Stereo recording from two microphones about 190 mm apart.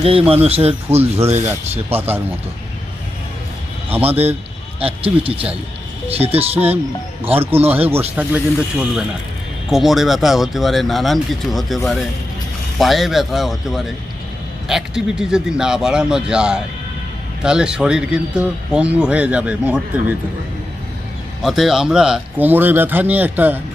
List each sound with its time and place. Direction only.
0.0 s speech: 30° right (ahead or behind)
2.0 s speech: 10° right (ahead or behind)
3.9 s speech: 10° right (ahead or behind)
4.8 s speech: 30° right (ahead or behind)
7.6 s speech: 10° right (ahead or behind)
9.6 s speech: centre (ahead or behind)
21.4 s speech: centre (ahead or behind)